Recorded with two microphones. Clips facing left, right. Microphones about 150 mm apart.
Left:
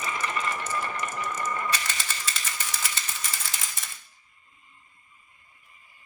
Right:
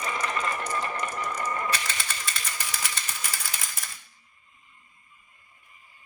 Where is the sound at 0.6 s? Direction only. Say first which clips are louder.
Right 1 dB; 40° right (ahead or behind).